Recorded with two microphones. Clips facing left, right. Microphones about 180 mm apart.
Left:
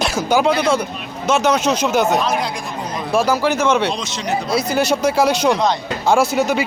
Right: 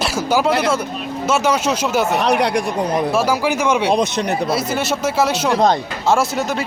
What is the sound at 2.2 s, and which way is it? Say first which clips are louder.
Speech: right 5 dB; 70° right (ahead or behind).